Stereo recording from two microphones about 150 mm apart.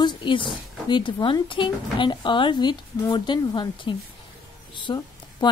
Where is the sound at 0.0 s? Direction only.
35° left (ahead or behind).